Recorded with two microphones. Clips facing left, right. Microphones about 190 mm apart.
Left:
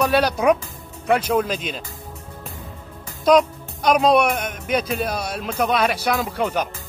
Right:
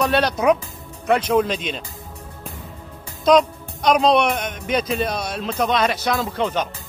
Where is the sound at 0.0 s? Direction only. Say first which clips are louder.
Even; 5° left (ahead or behind).